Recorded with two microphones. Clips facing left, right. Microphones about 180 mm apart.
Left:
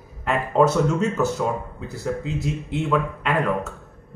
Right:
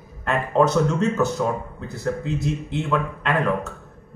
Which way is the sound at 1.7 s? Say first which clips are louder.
Right 1 dB; 5° left (ahead or behind).